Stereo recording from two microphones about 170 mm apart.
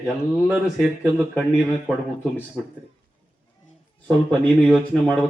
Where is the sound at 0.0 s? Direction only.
Centre (ahead or behind).